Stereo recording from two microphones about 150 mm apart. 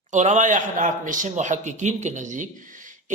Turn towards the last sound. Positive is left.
turn(degrees=-60)  # may be behind; listen again after turning